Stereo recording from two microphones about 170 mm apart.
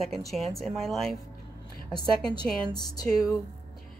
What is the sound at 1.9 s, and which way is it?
Music, 25° left (ahead or behind).